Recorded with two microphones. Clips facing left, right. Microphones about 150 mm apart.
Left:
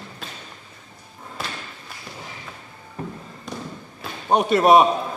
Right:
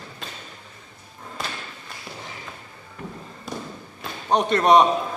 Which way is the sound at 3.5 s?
5° right (ahead or behind).